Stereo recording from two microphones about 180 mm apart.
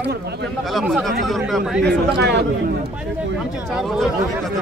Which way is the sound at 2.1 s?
70° right (ahead or behind).